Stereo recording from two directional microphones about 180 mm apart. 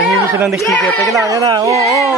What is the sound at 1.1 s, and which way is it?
Speech, 20° right (ahead or behind).